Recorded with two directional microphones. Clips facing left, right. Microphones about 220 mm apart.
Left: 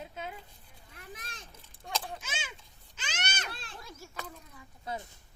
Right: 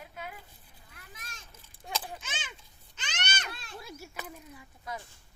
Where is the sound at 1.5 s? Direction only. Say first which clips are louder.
Even; 5° left (ahead or behind).